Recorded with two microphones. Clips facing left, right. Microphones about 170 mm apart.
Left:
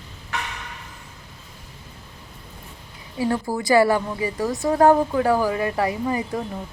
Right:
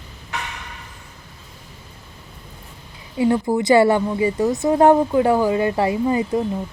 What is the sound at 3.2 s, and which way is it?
Speech, 20° right (ahead or behind).